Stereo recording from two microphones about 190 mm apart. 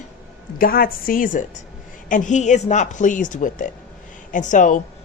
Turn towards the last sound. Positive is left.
turn(degrees=40)  # may be behind; listen again after turning